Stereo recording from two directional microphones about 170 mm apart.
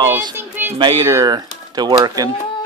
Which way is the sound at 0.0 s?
15° right (ahead or behind).